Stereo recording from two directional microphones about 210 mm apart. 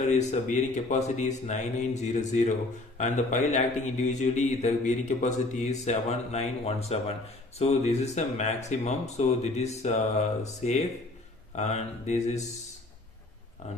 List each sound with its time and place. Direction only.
0.0 s a man's voice: 35° left (ahead or behind)
13.6 s a man's voice: 35° left (ahead or behind)